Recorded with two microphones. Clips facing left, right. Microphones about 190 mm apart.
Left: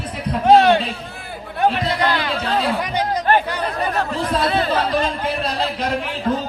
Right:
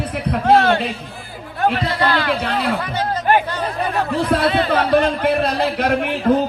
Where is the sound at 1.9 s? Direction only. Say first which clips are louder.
Right 1 dB; 15° left (ahead or behind).